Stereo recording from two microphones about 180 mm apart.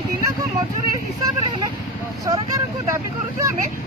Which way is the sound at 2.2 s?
20° right (ahead or behind).